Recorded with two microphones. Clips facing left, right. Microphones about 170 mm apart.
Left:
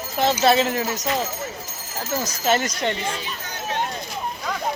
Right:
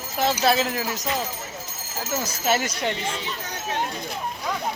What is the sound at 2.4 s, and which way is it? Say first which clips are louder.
Speech: left 2 dB; 5° right (ahead or behind).